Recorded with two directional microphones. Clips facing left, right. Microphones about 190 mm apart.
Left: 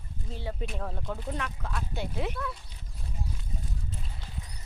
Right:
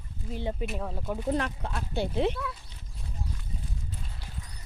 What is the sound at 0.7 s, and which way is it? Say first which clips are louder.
Speech: right 2 dB; 5° right (ahead or behind).